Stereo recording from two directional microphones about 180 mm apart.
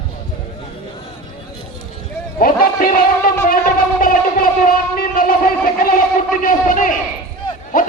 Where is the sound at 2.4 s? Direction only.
50° left (ahead or behind).